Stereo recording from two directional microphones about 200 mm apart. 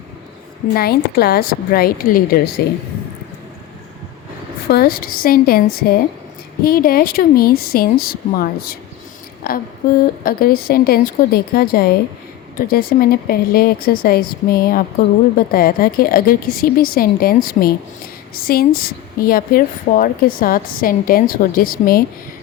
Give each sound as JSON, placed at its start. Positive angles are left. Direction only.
{"t": 0.7, "sound": "a woman's voice", "side_deg": 50}
{"t": 4.7, "sound": "a woman's voice", "side_deg": 50}